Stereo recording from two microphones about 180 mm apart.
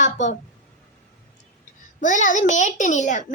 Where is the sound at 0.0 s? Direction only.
40° left (ahead or behind).